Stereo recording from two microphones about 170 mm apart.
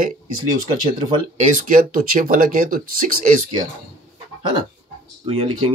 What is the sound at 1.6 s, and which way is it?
Speech, 55° right (ahead or behind).